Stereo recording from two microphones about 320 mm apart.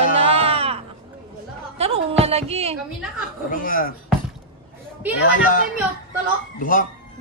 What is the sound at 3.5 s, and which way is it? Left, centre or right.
Speech, left.